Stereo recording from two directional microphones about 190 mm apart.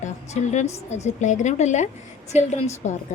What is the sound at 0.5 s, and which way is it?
Speech, 35° left (ahead or behind).